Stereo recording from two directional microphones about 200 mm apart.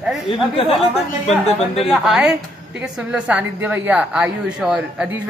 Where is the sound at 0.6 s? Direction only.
30° left (ahead or behind).